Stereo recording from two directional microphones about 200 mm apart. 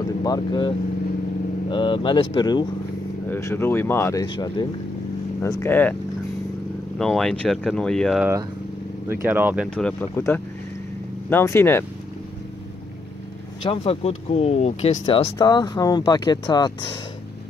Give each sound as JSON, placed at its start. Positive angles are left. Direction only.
{"t": 0.2, "sound": "speech", "side_deg": 20}
{"t": 7.0, "sound": "speech", "side_deg": 0}
{"t": 9.3, "sound": "speech", "side_deg": -10}
{"t": 9.8, "sound": "speech", "side_deg": 5}
{"t": 13.7, "sound": "speech", "side_deg": 30}